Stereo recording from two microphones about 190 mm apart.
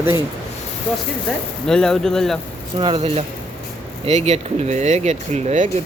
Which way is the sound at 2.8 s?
30° right (ahead or behind).